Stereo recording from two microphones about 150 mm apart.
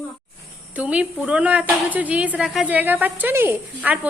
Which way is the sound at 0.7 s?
10° right (ahead or behind).